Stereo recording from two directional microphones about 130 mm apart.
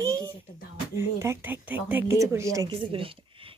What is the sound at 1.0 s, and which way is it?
Speech, 20° right (ahead or behind).